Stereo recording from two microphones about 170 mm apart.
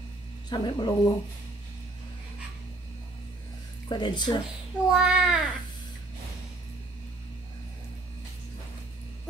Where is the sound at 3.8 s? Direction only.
25° left (ahead or behind).